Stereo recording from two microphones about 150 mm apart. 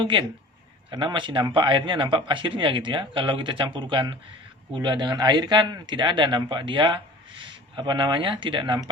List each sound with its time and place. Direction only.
0.0 s a man's voice: 35° right (ahead or behind)